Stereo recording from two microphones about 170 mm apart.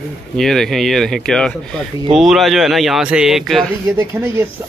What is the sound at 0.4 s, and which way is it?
Speech, centre (ahead or behind).